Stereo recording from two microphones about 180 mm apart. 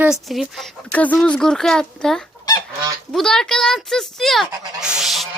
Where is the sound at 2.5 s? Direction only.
20° left (ahead or behind).